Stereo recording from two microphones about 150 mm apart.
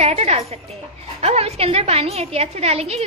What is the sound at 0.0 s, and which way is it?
A woman's voice, 45° right (ahead or behind).